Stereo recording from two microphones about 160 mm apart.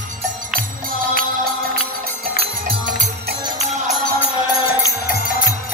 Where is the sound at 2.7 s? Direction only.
55° right (ahead or behind).